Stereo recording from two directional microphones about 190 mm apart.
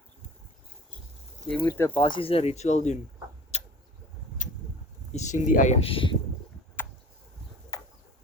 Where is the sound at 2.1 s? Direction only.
30° left (ahead or behind).